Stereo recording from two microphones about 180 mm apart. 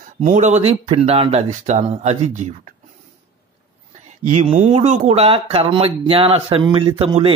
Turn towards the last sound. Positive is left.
turn(degrees=-35)  # may be behind; listen again after turning